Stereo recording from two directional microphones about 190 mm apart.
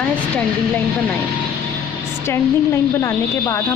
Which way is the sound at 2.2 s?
15° left (ahead or behind).